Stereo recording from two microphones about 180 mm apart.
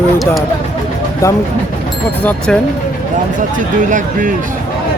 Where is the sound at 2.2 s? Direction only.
10° left (ahead or behind).